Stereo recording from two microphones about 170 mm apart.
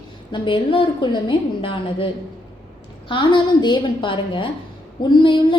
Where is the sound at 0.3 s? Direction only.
30° left (ahead or behind).